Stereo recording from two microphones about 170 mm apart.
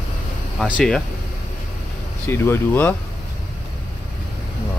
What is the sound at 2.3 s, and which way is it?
Speech, 15° left (ahead or behind).